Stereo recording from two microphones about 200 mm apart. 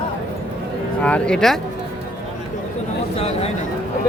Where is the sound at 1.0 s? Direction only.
5° left (ahead or behind).